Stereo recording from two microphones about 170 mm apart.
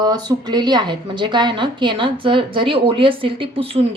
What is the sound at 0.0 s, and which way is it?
A woman's voice, 25° right (ahead or behind).